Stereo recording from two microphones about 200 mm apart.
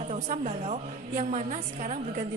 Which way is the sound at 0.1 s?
35° right (ahead or behind).